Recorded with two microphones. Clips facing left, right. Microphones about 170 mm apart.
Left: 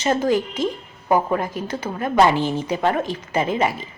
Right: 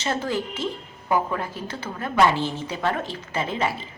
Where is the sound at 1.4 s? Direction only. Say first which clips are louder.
Left 5 dB; 15° left (ahead or behind).